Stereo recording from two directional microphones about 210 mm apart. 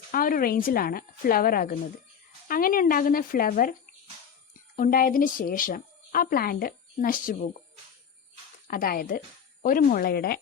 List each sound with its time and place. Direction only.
0.1 s speech: 40° left (ahead or behind)
4.8 s speech: 40° left (ahead or behind)
8.6 s speech: 45° left (ahead or behind)